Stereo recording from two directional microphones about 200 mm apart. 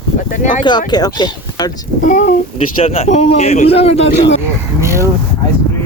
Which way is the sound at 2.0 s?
40° left (ahead or behind).